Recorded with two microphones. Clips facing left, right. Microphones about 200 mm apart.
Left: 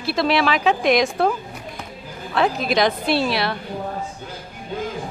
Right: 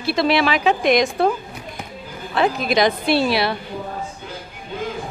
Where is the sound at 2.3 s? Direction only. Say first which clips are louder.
Right 1 dB; centre (ahead or behind).